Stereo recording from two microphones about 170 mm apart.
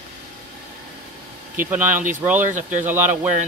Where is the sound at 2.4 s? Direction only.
50° right (ahead or behind).